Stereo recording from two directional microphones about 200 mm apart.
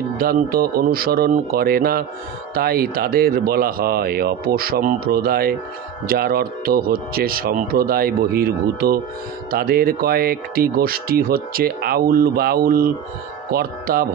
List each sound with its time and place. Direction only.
0.2 s speech: 45° right (ahead or behind)